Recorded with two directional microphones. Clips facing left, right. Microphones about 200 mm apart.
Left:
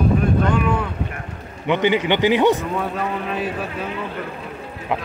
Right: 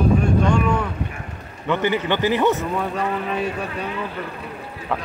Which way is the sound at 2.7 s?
Centre (ahead or behind).